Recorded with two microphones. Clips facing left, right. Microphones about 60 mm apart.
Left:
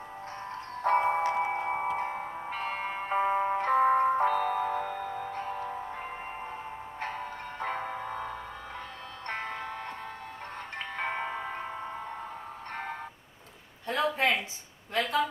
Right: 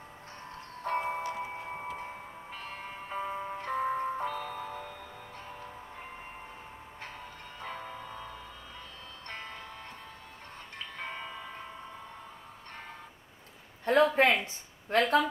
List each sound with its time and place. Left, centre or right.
0.8 s music: left
10.8 s music: left
13.8 s a sound: right